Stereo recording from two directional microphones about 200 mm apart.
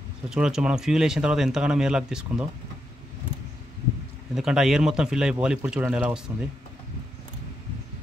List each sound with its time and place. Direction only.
0.3 s speech: 5° right (ahead or behind)
4.4 s speech: centre (ahead or behind)